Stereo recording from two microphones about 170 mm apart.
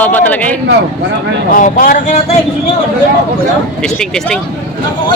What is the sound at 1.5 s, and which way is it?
Speech, 55° left (ahead or behind).